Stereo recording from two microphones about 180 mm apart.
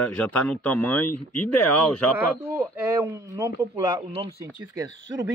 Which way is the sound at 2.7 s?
15° right (ahead or behind).